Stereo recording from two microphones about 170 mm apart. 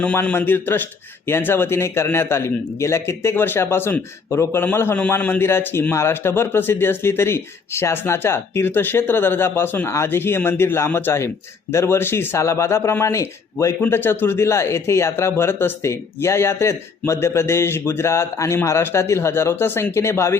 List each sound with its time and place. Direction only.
0.0 s a man's voice: 10° left (ahead or behind)